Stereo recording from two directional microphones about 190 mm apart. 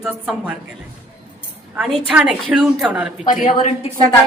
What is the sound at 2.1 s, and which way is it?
A woman's voice, 5° right (ahead or behind).